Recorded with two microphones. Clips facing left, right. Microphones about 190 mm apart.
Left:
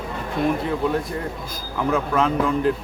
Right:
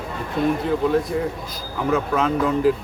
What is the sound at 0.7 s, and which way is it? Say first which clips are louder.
Speech: right 3 dB; centre (ahead or behind).